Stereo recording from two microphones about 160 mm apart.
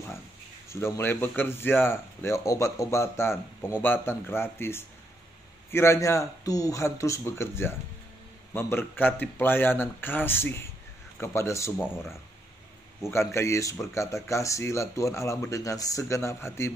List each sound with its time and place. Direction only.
0.7 s speech: 15° left (ahead or behind)
13.0 s speech: 15° left (ahead or behind)